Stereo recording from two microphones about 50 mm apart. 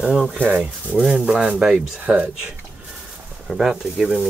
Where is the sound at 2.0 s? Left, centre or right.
Right.